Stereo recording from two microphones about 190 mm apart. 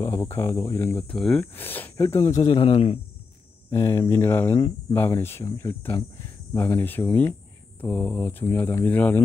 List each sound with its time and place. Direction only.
0.0 s speech: 15° left (ahead or behind)
1.1 s speech: centre (ahead or behind)
2.3 s a man's voice: 30° left (ahead or behind)
3.7 s speech: 15° left (ahead or behind)